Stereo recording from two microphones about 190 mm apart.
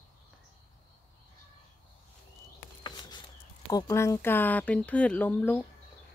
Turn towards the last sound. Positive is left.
turn(degrees=10)  # may be behind; listen again after turning